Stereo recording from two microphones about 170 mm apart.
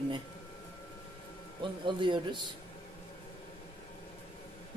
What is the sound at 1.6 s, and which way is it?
Speech, 30° right (ahead or behind).